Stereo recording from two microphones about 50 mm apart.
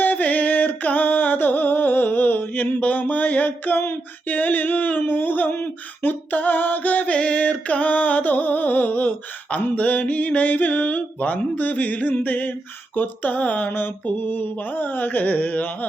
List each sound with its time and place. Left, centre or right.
0.0 s music: left
2.8 s mantra: left
4.3 s speech: left